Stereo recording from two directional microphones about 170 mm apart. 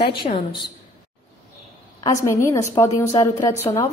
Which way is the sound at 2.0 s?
20° left (ahead or behind).